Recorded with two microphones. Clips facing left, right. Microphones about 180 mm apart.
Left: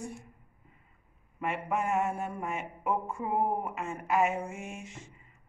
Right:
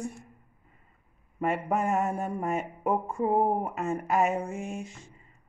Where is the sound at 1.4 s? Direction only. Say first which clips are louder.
Right 4 dB; 40° right (ahead or behind).